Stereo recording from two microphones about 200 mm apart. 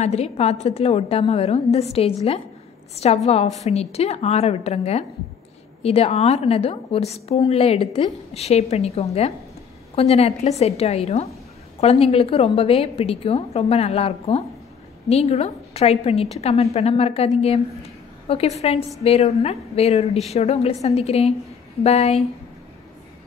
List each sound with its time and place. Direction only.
0.0 s a woman's voice: 30° left (ahead or behind)